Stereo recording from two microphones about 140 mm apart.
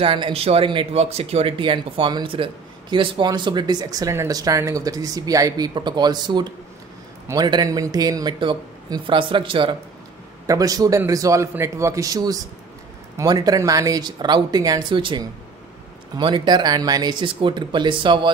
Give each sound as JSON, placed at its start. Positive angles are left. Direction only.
{"t": 0.0, "sound": "speech", "side_deg": -35}
{"t": 10.4, "sound": "speech", "side_deg": -25}